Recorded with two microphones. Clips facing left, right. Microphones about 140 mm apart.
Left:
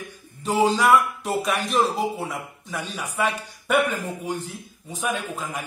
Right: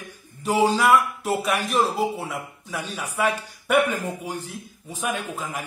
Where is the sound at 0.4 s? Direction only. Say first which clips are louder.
Even; 10° right (ahead or behind).